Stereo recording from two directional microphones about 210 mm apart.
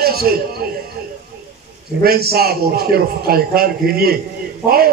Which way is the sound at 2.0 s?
45° right (ahead or behind).